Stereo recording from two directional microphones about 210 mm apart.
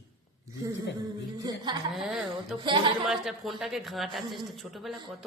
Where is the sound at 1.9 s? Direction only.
Centre (ahead or behind).